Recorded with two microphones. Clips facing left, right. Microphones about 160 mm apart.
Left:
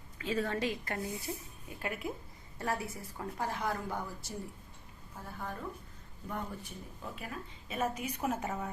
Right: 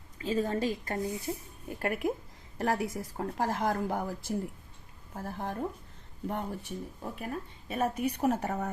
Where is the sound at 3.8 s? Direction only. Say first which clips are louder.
Right 6 dB; 90° right.